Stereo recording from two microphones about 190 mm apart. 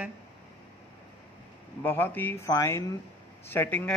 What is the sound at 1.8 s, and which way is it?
A man's voice, 10° left (ahead or behind).